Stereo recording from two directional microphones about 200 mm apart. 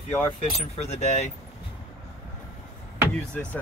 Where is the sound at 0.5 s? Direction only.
30° left (ahead or behind).